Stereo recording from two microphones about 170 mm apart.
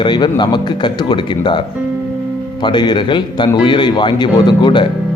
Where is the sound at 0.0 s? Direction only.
25° left (ahead or behind).